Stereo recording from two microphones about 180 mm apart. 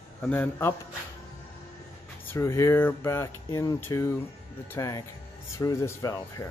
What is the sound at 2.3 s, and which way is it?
Speech, 15° left (ahead or behind).